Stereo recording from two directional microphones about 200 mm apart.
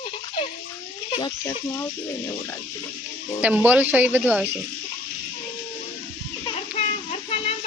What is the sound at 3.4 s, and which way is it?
Speech, 10° right (ahead or behind).